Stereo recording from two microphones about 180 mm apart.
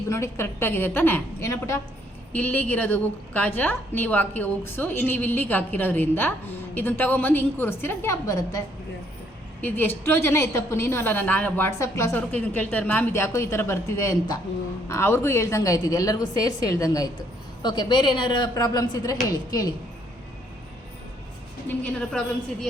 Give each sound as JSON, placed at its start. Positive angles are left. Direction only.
{"t": 0.1, "sound": "a woman's voice", "side_deg": 15}